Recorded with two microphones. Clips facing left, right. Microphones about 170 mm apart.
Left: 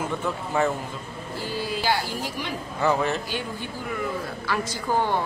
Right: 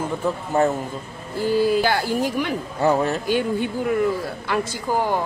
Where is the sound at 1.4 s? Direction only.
50° right (ahead or behind).